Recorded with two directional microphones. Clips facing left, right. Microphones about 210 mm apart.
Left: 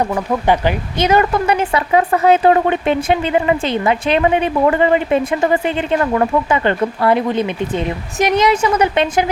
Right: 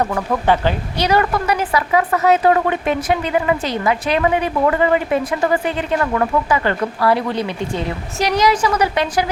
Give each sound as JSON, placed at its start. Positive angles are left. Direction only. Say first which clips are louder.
{"t": 0.1, "sound": "speech", "louder": "left 1 dB", "side_deg": 15}